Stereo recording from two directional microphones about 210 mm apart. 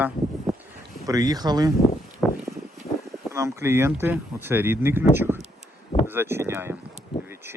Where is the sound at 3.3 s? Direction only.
15° right (ahead or behind).